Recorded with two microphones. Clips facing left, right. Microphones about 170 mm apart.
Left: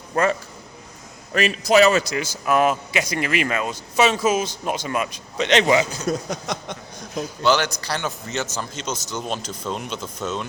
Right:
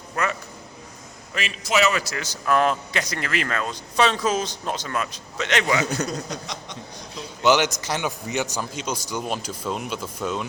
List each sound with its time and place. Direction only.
0.1 s a man's voice: 30° left (ahead or behind)
2.0 s speech: 15° left (ahead or behind)
6.1 s speech: 50° left (ahead or behind)
7.4 s a man's voice: 20° right (ahead or behind)